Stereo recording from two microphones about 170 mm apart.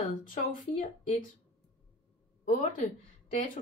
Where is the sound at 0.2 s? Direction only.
50° left (ahead or behind).